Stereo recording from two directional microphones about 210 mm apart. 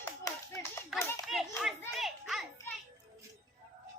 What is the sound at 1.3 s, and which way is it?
Hands, centre (ahead or behind).